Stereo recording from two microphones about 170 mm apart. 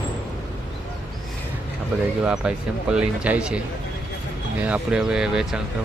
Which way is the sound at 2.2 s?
5° right (ahead or behind).